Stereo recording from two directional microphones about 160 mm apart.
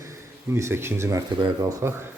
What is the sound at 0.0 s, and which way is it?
Speech, 15° right (ahead or behind).